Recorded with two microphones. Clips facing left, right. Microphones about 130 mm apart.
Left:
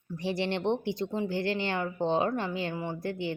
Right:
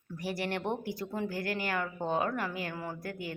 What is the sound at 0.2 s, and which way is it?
Speech, 25° left (ahead or behind).